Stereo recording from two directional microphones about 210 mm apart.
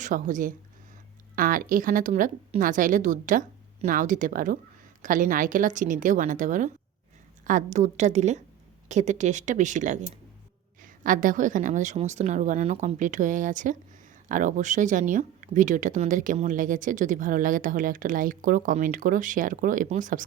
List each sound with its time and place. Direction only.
0.0 s speech: 40° right (ahead or behind)